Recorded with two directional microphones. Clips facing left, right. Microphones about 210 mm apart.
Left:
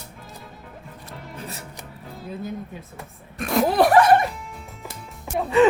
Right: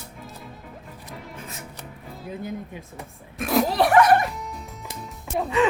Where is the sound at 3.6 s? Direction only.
50° left (ahead or behind).